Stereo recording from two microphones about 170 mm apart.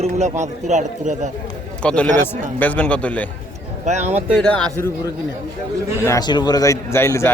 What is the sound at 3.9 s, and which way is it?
Speech, 40° right (ahead or behind).